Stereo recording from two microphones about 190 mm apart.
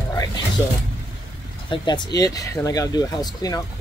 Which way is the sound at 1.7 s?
25° left (ahead or behind).